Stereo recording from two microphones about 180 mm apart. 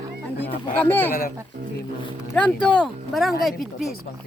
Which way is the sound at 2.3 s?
5° left (ahead or behind).